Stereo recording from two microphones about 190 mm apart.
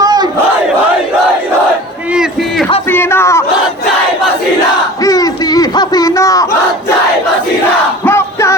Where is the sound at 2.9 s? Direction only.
10° left (ahead or behind).